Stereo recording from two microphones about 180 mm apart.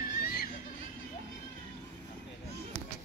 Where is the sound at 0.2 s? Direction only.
55° left (ahead or behind).